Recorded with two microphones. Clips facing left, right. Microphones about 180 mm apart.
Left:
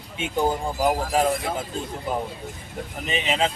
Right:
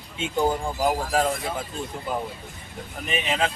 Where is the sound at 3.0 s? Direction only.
20° left (ahead or behind).